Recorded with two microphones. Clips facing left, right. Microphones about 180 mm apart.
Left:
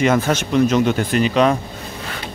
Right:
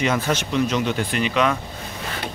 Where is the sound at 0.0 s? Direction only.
50° left (ahead or behind).